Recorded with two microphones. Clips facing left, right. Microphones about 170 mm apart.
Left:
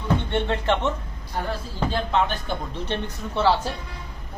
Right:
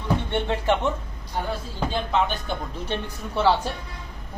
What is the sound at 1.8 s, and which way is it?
Speech, centre (ahead or behind).